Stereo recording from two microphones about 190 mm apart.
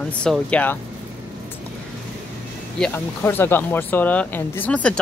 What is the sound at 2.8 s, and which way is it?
Speech, 10° left (ahead or behind).